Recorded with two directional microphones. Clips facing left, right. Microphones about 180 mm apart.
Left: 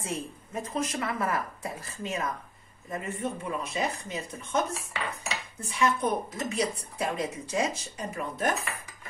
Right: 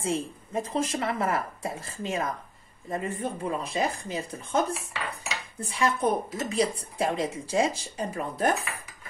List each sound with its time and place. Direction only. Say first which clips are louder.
0.0 s a woman's voice: right 5 dB; 30° right (ahead or behind)